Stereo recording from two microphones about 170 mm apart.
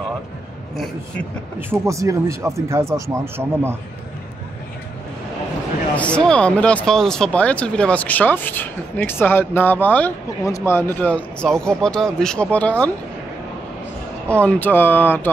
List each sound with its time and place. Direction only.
1.7 s speech: 20° right (ahead or behind)
5.9 s speech: 5° left (ahead or behind)
14.4 s speech: 10° left (ahead or behind)